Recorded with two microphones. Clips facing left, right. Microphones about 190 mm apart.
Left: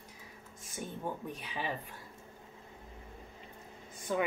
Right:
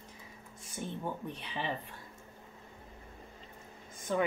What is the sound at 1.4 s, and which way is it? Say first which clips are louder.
Speech: right 1 dB; 5° left (ahead or behind).